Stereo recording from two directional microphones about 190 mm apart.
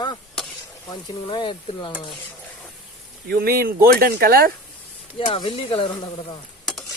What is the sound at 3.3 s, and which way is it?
Speech, 55° right (ahead or behind).